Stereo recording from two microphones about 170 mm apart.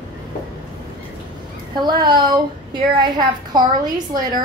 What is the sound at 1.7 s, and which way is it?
A woman's voice, 25° right (ahead or behind).